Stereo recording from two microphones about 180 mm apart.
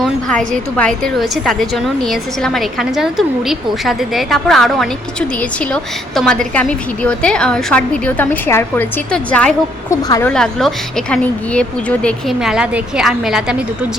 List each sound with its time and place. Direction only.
0.0 s a woman's voice: 5° left (ahead or behind)
9.9 s a woman's voice: 15° left (ahead or behind)
10.3 s a woman's voice: 5° left (ahead or behind)